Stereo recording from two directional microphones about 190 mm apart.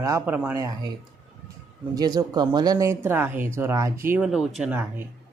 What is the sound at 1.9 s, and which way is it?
Speech, 20° right (ahead or behind).